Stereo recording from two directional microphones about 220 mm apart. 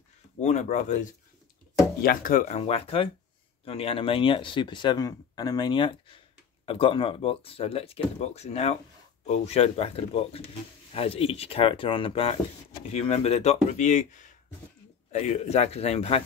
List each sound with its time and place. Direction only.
0.4 s speech: 30° left (ahead or behind)